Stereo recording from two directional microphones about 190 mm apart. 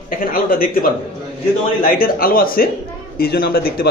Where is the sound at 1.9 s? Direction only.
50° left (ahead or behind).